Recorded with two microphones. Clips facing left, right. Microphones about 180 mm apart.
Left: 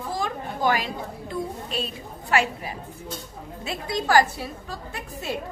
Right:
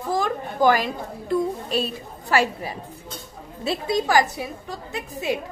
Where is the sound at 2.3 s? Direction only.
35° right (ahead or behind).